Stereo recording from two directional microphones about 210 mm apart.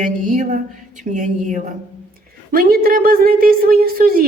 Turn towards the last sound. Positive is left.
turn(degrees=-45)  # may be behind; listen again after turning